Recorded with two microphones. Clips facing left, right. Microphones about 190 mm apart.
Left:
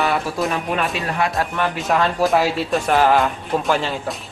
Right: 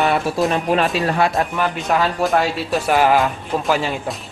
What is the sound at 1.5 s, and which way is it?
Speech, centre (ahead or behind).